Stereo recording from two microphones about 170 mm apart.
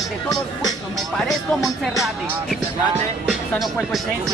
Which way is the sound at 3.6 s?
Centre (ahead or behind).